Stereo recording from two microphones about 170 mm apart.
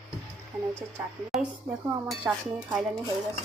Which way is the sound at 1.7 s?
10° right (ahead or behind).